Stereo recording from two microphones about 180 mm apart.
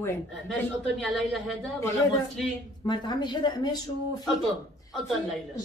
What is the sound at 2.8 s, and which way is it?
A woman's voice, 25° left (ahead or behind).